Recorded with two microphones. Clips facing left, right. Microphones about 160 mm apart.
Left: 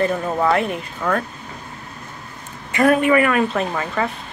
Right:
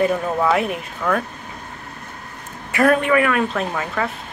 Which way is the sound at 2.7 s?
5° left (ahead or behind).